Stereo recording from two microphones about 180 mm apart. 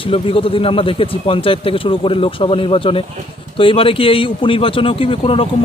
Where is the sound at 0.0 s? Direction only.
30° left (ahead or behind).